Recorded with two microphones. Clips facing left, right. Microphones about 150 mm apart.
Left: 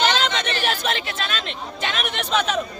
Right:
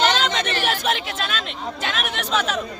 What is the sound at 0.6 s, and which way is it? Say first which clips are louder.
Speech: right 1 dB; 5° right (ahead or behind).